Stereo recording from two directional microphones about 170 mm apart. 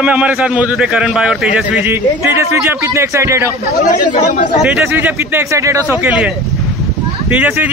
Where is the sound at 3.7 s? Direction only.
45° left (ahead or behind).